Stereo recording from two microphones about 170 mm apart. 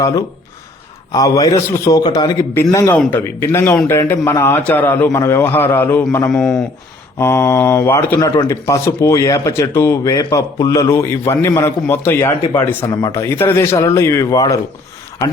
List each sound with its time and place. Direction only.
1.1 s a man's voice: 20° left (ahead or behind)
6.3 s speech: 5° left (ahead or behind)
7.2 s a man's voice: 15° left (ahead or behind)